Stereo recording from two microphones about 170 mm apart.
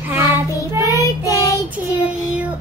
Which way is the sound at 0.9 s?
20° left (ahead or behind).